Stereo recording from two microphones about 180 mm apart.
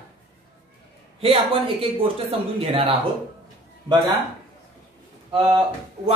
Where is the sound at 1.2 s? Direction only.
30° right (ahead or behind).